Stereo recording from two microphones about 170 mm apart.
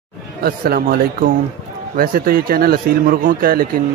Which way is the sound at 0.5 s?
60° right (ahead or behind).